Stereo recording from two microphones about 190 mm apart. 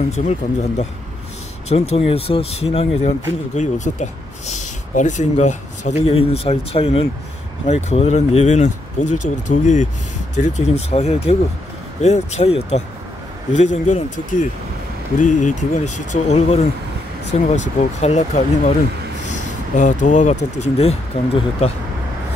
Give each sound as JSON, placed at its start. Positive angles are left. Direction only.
{"t": 0.1, "sound": "speech", "side_deg": 35}
{"t": 19.2, "sound": "a sound", "side_deg": 40}
{"t": 20.5, "sound": "speech", "side_deg": 35}